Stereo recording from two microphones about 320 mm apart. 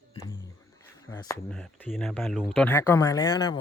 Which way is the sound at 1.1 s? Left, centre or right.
Centre.